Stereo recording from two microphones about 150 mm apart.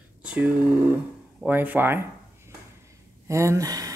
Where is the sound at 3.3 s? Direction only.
20° right (ahead or behind).